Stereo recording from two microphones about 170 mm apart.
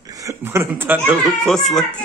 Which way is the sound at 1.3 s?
Centre (ahead or behind).